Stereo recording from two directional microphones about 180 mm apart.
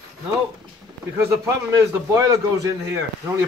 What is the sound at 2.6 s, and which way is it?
Speech, 15° right (ahead or behind).